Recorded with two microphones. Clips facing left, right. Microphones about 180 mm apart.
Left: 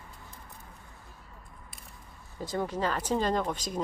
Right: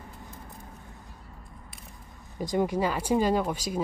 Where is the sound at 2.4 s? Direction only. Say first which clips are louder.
Right 5 dB; 15° right (ahead or behind).